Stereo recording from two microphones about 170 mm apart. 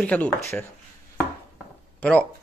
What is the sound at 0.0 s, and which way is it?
Speech, 10° left (ahead or behind).